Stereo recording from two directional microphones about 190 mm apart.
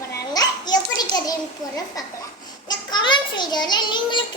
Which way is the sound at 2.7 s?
25° left (ahead or behind).